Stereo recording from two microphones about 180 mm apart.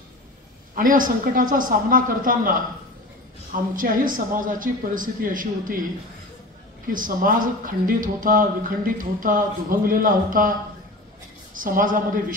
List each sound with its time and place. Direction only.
0.7 s speech: 50° right (ahead or behind)
3.7 s speech: 50° right (ahead or behind)
6.9 s speech: 50° right (ahead or behind)
11.5 s speech: 50° right (ahead or behind)